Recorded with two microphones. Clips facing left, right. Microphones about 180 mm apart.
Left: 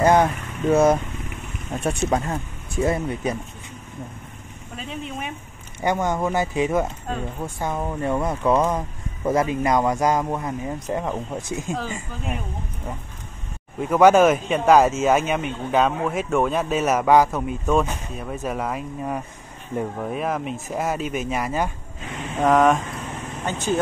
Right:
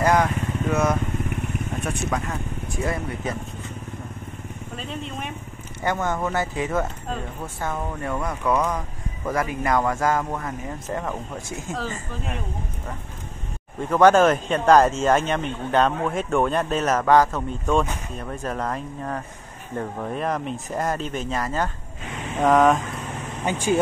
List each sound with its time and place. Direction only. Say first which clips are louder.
0.0 s vehicle: left 3 dB; 25° left (ahead or behind)
1.8 s speech: left 7 dB; 30° left (ahead or behind)
4.7 s speech: left 1 dB; 5° left (ahead or behind)
5.8 s speech: left 2 dB; 15° left (ahead or behind)
13.7 s speech: left 1 dB; 10° left (ahead or behind)
22.4 s speech: even; centre (ahead or behind)
23.4 s speech: right 2 dB; 10° right (ahead or behind)